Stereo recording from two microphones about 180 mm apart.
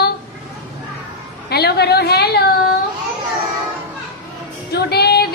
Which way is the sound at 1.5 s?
65° left (ahead or behind).